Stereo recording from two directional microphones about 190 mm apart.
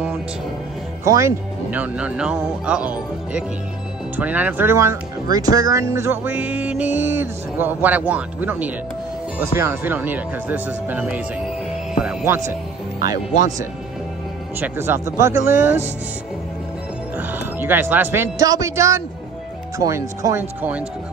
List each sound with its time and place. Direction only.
1.0 s speech: 15° right (ahead or behind)
14.6 s speech: 10° right (ahead or behind)
17.2 s speech: 10° right (ahead or behind)